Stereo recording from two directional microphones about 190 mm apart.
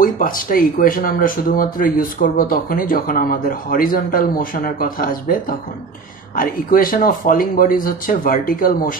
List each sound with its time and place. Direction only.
0.0 s speech: 45° left (ahead or behind)